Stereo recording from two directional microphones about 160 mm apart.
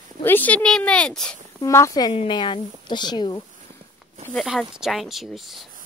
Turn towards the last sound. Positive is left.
turn(degrees=0)  # may be behind; listen again after turning